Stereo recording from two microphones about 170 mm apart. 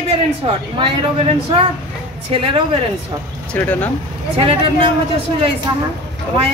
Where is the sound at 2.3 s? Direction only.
35° right (ahead or behind).